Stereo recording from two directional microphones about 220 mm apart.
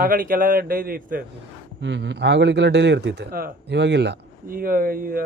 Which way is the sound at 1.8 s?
55° right (ahead or behind).